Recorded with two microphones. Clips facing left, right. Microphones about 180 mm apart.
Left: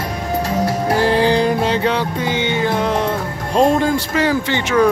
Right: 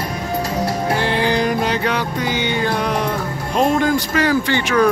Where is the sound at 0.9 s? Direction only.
35° left (ahead or behind).